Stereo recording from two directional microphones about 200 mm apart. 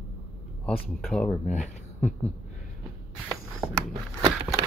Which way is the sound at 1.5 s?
35° left (ahead or behind).